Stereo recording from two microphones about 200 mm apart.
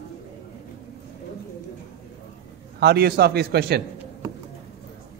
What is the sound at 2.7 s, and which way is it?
A man's voice, 55° right (ahead or behind).